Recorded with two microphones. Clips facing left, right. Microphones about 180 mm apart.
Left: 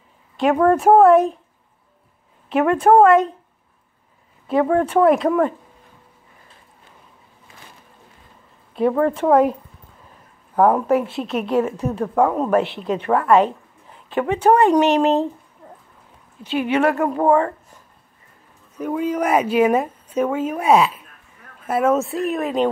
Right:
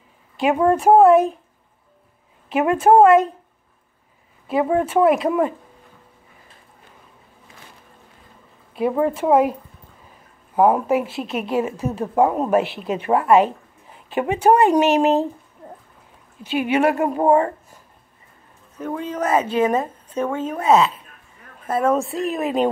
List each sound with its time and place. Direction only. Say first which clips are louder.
0.4 s a woman's voice: left 2 dB; 5° right (ahead or behind)
2.5 s a woman's voice: even; 5° right (ahead or behind)
4.5 s a woman's voice: left 2 dB; 10° right (ahead or behind)
8.7 s a woman's voice: left 2 dB; 10° right (ahead or behind)
12.0 s speech: even; 20° right (ahead or behind)
12.4 s a woman's voice: even; 10° right (ahead or behind)
16.4 s a woman's voice: even; 10° right (ahead or behind)
18.8 s a woman's voice: left 4 dB; 10° left (ahead or behind); by 22.7 s 5° right (ahead or behind)